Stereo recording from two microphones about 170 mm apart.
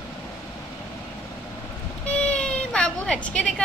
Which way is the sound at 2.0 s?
5° left (ahead or behind).